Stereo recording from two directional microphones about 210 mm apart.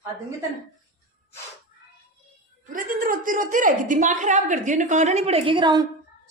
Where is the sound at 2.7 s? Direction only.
40° right (ahead or behind).